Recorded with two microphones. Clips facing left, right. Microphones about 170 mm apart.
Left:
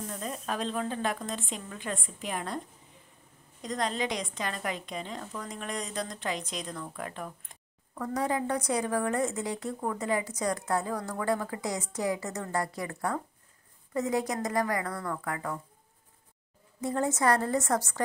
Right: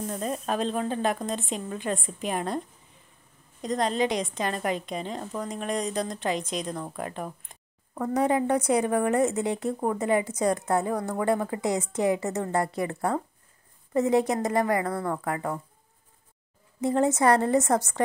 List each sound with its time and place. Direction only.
0.0 s speech: 30° right (ahead or behind)
3.6 s speech: 25° right (ahead or behind)
16.8 s speech: 20° right (ahead or behind)